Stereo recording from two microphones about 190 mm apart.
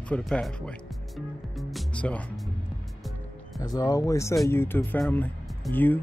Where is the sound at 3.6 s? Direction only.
20° left (ahead or behind).